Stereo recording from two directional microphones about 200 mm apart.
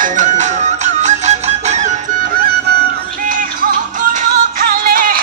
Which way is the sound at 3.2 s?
45° right (ahead or behind).